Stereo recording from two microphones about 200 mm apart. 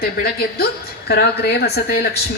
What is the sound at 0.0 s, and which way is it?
A woman's voice, 50° left (ahead or behind).